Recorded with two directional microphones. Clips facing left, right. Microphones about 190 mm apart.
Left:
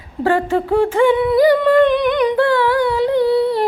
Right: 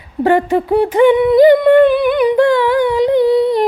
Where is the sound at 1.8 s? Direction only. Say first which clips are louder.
Right 3 dB; 5° right (ahead or behind).